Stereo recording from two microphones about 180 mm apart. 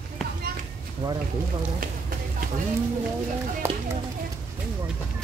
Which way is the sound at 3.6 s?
15° right (ahead or behind).